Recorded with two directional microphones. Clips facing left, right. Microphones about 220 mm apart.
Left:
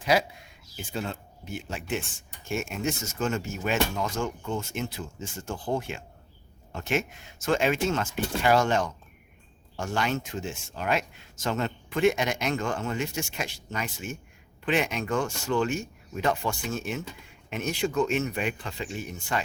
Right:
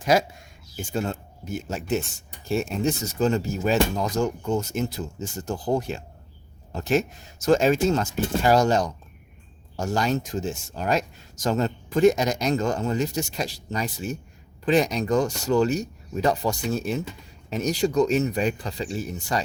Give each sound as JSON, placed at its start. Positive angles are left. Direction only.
{"t": 0.0, "sound": "speech", "side_deg": -45}